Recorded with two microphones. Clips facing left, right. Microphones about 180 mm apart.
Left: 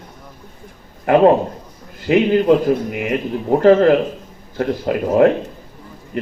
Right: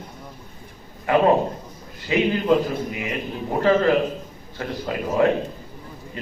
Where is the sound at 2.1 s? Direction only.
60° left (ahead or behind).